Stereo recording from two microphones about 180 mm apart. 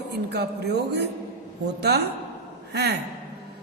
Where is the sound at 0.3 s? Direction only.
65° right (ahead or behind).